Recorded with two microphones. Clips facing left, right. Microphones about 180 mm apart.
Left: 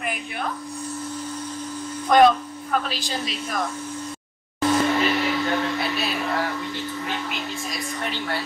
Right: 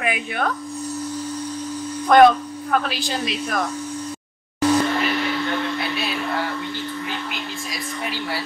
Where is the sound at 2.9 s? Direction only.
65° right (ahead or behind).